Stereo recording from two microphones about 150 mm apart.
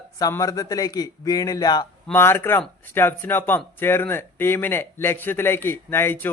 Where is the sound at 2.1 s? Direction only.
15° left (ahead or behind).